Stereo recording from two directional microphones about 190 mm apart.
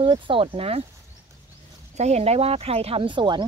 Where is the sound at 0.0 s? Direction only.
25° right (ahead or behind).